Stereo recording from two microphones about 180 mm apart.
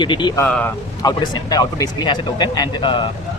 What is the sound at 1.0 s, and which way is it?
Speech, 20° left (ahead or behind).